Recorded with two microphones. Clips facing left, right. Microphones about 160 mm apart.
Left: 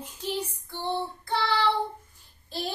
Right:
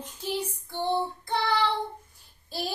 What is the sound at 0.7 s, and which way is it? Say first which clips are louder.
Child singing: right 4 dB; 15° right (ahead or behind).